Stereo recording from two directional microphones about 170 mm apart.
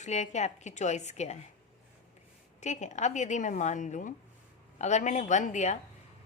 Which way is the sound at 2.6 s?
45° left (ahead or behind).